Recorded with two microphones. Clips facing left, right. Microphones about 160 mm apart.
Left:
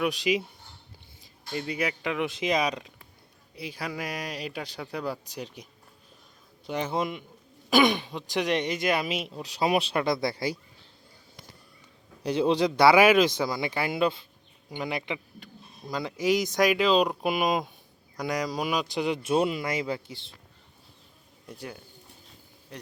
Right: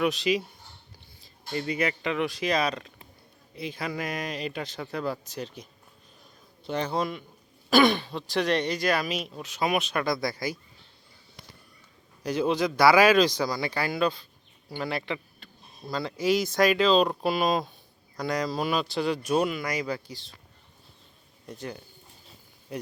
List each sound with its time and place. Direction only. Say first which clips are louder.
0.0 s speech: right 1 dB; 10° left (ahead or behind)
2.2 s speech: left 1 dB; 20° left (ahead or behind)
6.7 s speech: right 1 dB; 20° left (ahead or behind)
12.2 s speech: left 2 dB; 30° left (ahead or behind)
21.4 s speech: right 3 dB; 10° left (ahead or behind)
22.7 s a man's voice: right 8 dB; 10° right (ahead or behind)